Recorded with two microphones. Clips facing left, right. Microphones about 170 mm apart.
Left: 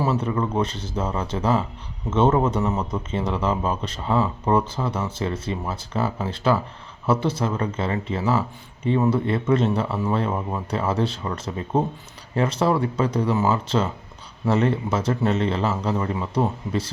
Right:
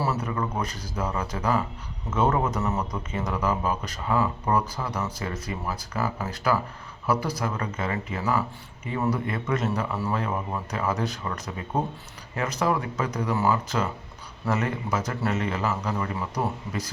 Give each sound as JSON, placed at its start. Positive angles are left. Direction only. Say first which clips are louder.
{"t": 0.0, "sound": "a man's voice", "louder": "left 5 dB", "side_deg": 20}